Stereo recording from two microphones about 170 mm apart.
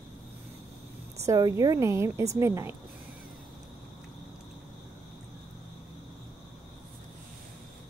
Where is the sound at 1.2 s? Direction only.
20° right (ahead or behind).